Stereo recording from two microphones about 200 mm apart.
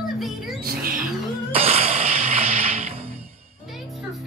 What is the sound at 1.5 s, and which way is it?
Cat, 30° right (ahead or behind).